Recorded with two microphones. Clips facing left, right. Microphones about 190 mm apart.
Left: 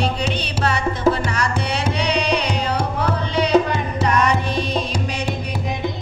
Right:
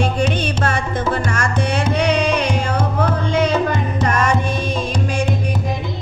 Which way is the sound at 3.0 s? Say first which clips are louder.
Right 4 dB; 50° right (ahead or behind).